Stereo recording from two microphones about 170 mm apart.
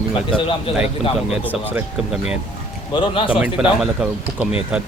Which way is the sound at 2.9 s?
30° left (ahead or behind).